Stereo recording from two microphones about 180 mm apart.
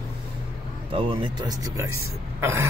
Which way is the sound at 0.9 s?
30° right (ahead or behind).